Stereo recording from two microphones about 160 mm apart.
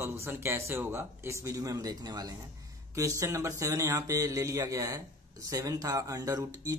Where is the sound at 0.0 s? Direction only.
15° right (ahead or behind).